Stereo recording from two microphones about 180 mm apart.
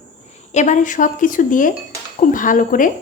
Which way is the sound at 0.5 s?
45° left (ahead or behind).